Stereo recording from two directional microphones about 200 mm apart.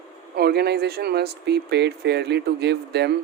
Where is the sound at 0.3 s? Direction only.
55° right (ahead or behind).